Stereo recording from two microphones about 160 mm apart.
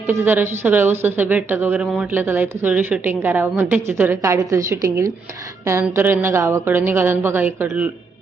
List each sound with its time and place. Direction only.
0.1 s speech: 15° right (ahead or behind)